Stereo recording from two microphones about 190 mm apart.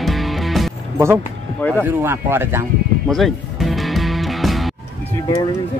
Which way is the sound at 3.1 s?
Centre (ahead or behind).